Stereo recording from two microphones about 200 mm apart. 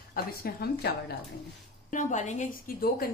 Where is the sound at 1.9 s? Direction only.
40° left (ahead or behind).